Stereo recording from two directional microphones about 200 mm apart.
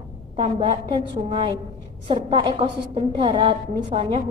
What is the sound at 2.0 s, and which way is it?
A woman's voice, 25° right (ahead or behind).